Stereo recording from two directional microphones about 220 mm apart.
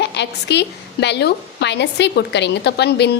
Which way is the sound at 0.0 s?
50° left (ahead or behind).